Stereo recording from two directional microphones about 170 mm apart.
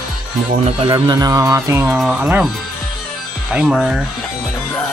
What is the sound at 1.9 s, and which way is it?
Speech, 5° right (ahead or behind).